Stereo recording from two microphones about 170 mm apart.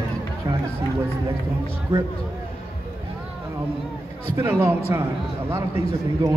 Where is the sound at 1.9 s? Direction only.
15° right (ahead or behind).